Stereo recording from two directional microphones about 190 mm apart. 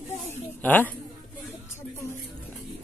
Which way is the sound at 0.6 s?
10° left (ahead or behind).